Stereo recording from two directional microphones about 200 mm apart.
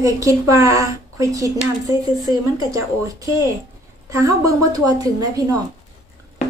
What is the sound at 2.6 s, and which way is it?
Speech, 15° right (ahead or behind).